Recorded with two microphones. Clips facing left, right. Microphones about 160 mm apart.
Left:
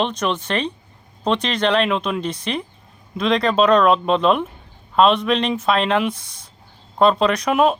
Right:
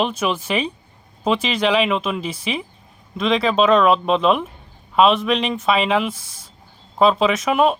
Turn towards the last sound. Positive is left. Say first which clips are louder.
# even
turn(degrees=0)  # may be behind; listen again after turning